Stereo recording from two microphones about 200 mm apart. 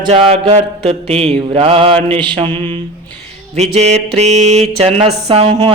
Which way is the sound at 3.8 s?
35° right (ahead or behind).